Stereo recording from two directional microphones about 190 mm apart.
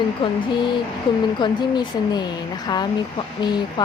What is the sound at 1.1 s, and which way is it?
Speech, 25° left (ahead or behind).